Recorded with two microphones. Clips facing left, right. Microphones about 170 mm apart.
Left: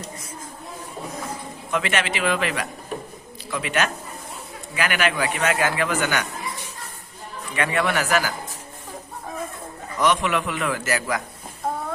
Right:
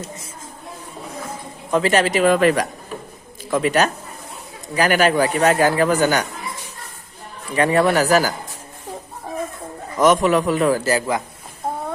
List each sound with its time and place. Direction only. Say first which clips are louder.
1.7 s speech: right 8 dB; 35° right (ahead or behind)
7.5 s speech: right 7 dB; 35° right (ahead or behind)
10.0 s speech: right 6 dB; 45° right (ahead or behind)